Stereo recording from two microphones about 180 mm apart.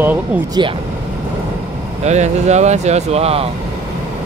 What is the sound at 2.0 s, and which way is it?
Speech, 40° right (ahead or behind).